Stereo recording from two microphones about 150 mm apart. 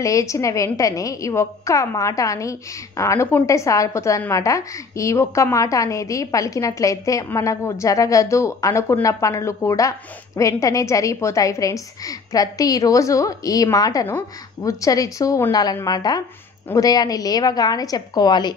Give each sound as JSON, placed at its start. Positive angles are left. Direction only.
{"t": 0.0, "sound": "a woman's voice", "side_deg": 20}